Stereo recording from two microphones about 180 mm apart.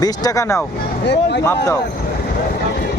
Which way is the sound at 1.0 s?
70° left (ahead or behind).